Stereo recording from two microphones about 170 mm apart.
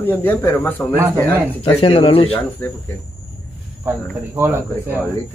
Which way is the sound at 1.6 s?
35° left (ahead or behind).